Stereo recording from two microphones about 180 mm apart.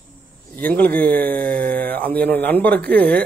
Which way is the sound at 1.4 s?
50° right (ahead or behind).